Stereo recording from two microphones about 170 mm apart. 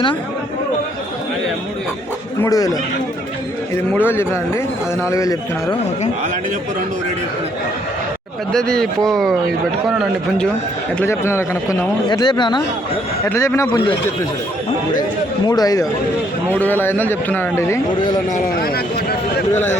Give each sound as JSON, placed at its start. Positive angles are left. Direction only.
{"t": 2.4, "sound": "speech", "side_deg": 20}
{"t": 4.0, "sound": "a man's voice", "side_deg": 15}
{"t": 8.5, "sound": "a man's voice", "side_deg": 5}
{"t": 11.0, "sound": "a man's voice", "side_deg": 15}
{"t": 12.0, "sound": "speech", "side_deg": 25}
{"t": 13.2, "sound": "a man's voice", "side_deg": 15}
{"t": 15.4, "sound": "speech", "side_deg": 25}
{"t": 16.5, "sound": "a man's voice", "side_deg": 10}
{"t": 18.3, "sound": "speech", "side_deg": 60}